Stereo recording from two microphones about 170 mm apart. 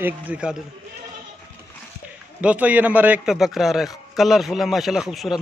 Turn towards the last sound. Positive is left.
turn(degrees=0)  # may be behind; listen again after turning